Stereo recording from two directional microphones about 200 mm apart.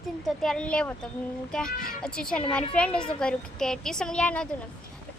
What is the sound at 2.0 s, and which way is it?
A woman's voice, 5° left (ahead or behind).